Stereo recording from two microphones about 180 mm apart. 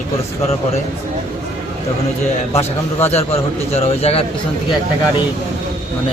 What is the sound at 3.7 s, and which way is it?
Speech, 35° left (ahead or behind).